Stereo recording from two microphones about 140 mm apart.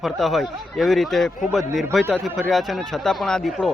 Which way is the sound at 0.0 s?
Centre (ahead or behind).